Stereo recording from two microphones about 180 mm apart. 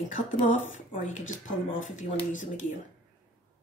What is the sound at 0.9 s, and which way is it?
Speech, 45° left (ahead or behind).